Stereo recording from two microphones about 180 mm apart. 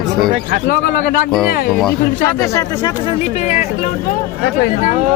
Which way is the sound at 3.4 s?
40° left (ahead or behind).